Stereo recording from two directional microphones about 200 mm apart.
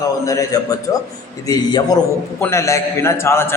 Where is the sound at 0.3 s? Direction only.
15° left (ahead or behind).